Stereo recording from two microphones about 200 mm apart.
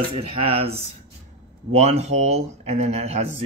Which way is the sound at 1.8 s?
35° right (ahead or behind).